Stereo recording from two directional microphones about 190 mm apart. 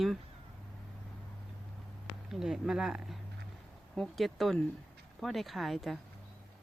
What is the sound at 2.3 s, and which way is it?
Speech, centre (ahead or behind).